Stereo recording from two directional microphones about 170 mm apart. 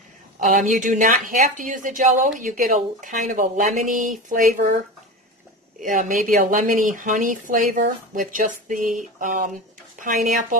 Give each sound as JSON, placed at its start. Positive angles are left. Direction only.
{"t": 0.4, "sound": "speech", "side_deg": -50}
{"t": 5.9, "sound": "speech", "side_deg": -50}